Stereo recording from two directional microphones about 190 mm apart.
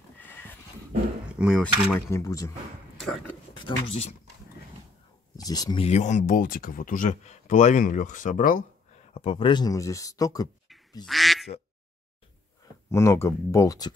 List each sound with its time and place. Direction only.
0.2 s horse: 10° left (ahead or behind)
1.3 s a sound: 5° right (ahead or behind)
1.6 s speech: 10° left (ahead or behind)
3.0 s speech: 5° left (ahead or behind)
5.4 s speech: 20° left (ahead or behind)
5.9 s speech: 40° left (ahead or behind)
9.1 s speech: 30° left (ahead or behind)
11.1 s quack: centre (ahead or behind)
12.9 s speech: 15° left (ahead or behind)